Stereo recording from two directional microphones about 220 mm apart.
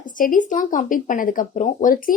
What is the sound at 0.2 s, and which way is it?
Speech, 35° left (ahead or behind).